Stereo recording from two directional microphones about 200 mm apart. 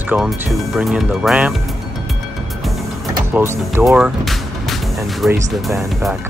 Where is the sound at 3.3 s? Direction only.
10° right (ahead or behind).